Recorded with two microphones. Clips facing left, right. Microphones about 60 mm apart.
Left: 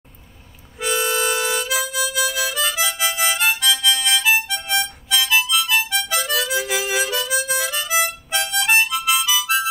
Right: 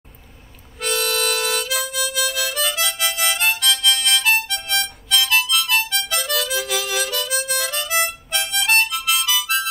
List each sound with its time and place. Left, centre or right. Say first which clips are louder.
0.7 s harmonica: left 1 dB; centre
3.3 s harmonica: left 1 dB; centre
7.4 s harmonica: left 1 dB; centre